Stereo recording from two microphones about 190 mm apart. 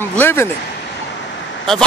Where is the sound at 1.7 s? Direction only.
Centre (ahead or behind).